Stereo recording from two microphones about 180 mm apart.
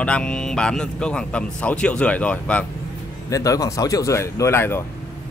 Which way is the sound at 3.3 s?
20° left (ahead or behind).